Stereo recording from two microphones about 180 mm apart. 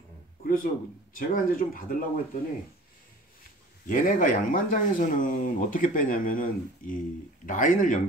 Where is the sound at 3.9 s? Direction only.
50° left (ahead or behind).